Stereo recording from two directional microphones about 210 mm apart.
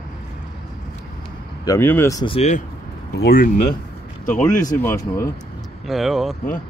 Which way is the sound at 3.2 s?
45° left (ahead or behind).